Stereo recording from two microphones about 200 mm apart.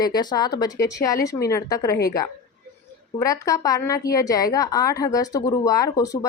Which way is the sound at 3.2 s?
15° left (ahead or behind).